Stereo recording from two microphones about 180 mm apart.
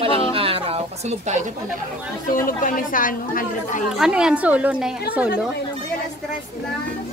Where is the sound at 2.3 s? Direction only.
50° left (ahead or behind).